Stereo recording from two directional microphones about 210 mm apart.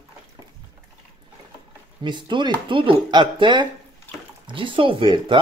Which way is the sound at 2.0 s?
20° right (ahead or behind).